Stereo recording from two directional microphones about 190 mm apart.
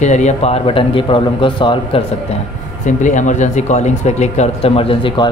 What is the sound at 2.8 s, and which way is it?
A man's voice, 40° left (ahead or behind).